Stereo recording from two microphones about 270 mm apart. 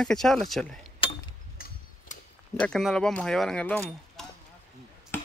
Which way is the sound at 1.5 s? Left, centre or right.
Left.